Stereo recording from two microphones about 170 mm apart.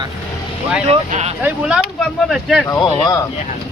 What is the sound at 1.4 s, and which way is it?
Speech, 10° right (ahead or behind).